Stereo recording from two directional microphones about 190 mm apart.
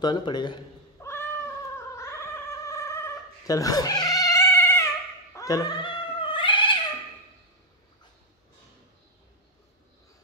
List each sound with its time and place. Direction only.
0.0 s a man's voice: 20° left (ahead or behind)
1.0 s cat: 15° left (ahead or behind)